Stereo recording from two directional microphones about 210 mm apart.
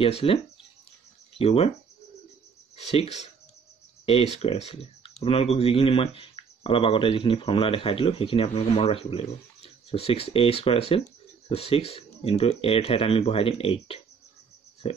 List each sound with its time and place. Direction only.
0.2 s speech: 25° left (ahead or behind)
1.4 s speech: 30° left (ahead or behind)
2.7 s speech: 30° left (ahead or behind)